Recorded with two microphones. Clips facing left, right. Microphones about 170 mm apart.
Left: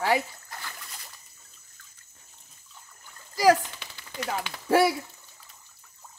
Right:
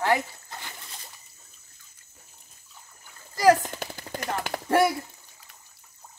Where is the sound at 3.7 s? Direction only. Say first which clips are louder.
Right 10 dB; 45° right (ahead or behind).